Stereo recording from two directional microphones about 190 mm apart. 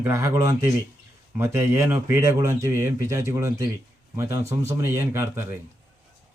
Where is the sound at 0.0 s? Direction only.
15° right (ahead or behind).